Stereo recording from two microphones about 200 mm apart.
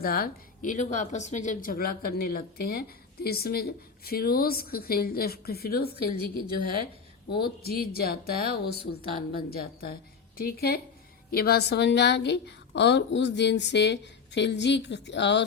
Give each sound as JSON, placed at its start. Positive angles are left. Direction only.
{"t": 0.0, "sound": "a woman's voice", "side_deg": 50}
{"t": 7.3, "sound": "a woman's voice", "side_deg": 50}